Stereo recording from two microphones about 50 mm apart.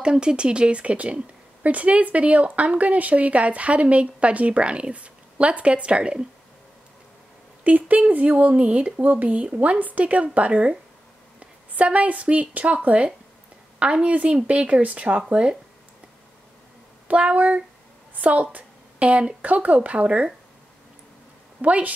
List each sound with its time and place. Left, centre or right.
0.0 s a woman's voice: centre
7.6 s a woman's voice: right
17.1 s a woman's voice: right
21.5 s a woman's voice: right